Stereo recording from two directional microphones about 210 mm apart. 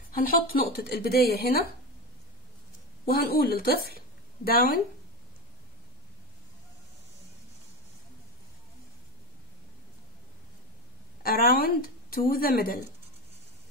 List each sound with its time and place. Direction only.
0.2 s speech: 45° left (ahead or behind)
3.1 s speech: 45° left (ahead or behind)
11.2 s speech: 45° left (ahead or behind)